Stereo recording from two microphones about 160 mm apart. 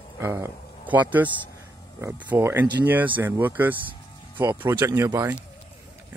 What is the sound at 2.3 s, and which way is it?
A man's voice, 10° right (ahead or behind).